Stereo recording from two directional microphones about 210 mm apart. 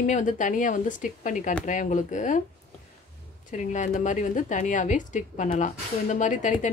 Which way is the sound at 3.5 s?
35° left (ahead or behind).